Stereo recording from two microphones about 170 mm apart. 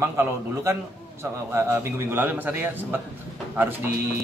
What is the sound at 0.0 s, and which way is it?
A man's voice, 15° right (ahead or behind).